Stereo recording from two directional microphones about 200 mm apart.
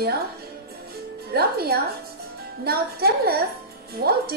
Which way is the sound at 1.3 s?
50° right (ahead or behind).